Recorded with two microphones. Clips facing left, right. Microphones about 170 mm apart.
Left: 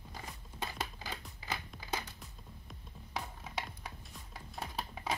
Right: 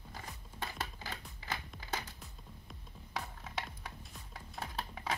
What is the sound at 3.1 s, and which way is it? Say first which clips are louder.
Music: left 1 dB; 10° left (ahead or behind).